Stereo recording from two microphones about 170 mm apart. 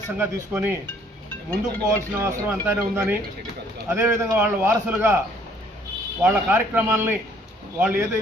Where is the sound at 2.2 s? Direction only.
10° right (ahead or behind).